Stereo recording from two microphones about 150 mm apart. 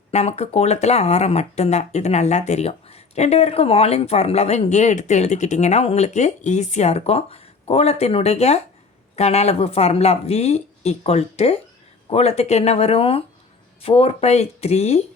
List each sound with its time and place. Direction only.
0.1 s speech: 45° left (ahead or behind)